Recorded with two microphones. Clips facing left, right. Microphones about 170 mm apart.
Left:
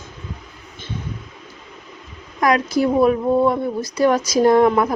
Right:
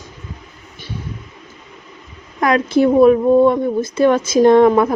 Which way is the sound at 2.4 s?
30° right (ahead or behind).